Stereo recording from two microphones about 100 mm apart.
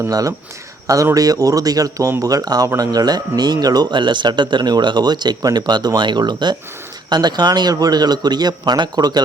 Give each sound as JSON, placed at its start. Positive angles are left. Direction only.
{"t": 0.1, "sound": "speech", "side_deg": -35}